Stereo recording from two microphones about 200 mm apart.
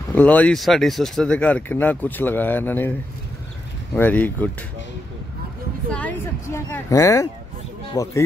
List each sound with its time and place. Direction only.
0.1 s speech: 10° left (ahead or behind)
3.9 s speech: 10° left (ahead or behind)
5.9 s speech: 5° left (ahead or behind)